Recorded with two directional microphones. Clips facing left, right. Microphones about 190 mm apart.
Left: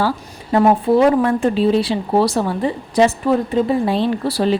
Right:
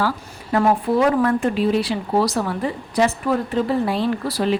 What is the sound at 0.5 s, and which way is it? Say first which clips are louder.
Speech: left 4 dB; 25° left (ahead or behind).